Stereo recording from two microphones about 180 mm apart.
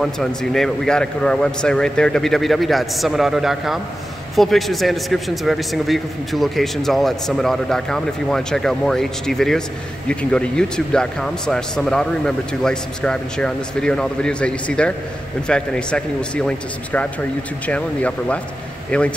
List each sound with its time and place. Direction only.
0.0 s a man's voice: centre (ahead or behind)